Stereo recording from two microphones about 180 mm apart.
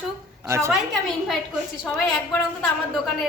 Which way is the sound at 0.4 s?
15° right (ahead or behind).